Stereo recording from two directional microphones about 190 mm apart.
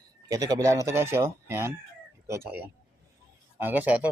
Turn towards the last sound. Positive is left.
turn(degrees=-10)  # may be behind; listen again after turning